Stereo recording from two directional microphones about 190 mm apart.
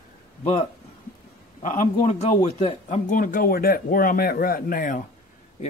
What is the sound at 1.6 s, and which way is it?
Speech, 40° left (ahead or behind).